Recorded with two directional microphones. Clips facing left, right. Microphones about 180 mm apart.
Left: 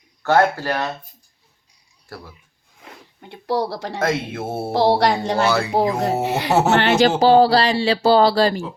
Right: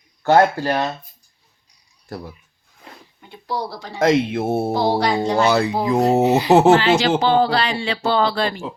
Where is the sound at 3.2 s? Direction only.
75° left (ahead or behind).